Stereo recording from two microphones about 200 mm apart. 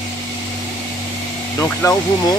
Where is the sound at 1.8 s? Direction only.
15° left (ahead or behind).